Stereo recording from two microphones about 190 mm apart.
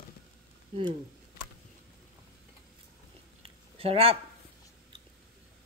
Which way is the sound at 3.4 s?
30° right (ahead or behind).